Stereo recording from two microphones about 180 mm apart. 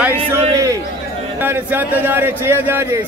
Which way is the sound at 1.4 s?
10° right (ahead or behind).